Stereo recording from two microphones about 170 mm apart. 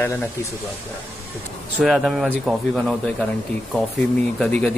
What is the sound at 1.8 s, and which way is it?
A man's voice, centre (ahead or behind).